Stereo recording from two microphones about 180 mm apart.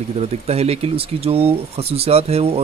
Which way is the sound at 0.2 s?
35° right (ahead or behind).